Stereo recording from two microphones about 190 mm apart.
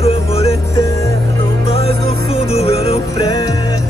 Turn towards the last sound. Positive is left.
turn(degrees=30)  # may be behind; listen again after turning